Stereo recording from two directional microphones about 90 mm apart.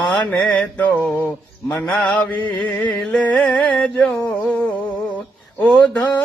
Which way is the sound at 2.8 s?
10° left (ahead or behind).